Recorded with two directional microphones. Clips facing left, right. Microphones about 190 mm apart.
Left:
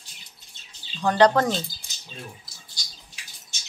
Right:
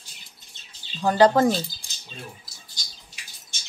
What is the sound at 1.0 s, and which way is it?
Speech, 5° right (ahead or behind).